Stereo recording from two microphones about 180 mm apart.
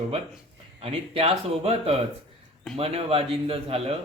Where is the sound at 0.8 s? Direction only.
35° right (ahead or behind).